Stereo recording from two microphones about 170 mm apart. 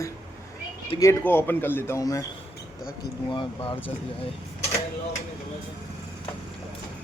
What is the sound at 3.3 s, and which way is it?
Speech, 30° left (ahead or behind).